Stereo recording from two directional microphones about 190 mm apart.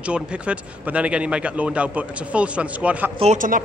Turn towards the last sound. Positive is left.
turn(degrees=-40)  # may be behind; listen again after turning